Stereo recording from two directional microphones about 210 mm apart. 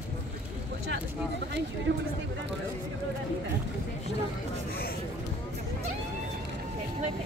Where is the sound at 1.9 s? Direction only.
55° right (ahead or behind).